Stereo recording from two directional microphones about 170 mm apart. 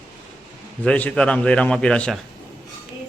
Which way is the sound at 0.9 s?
5° left (ahead or behind).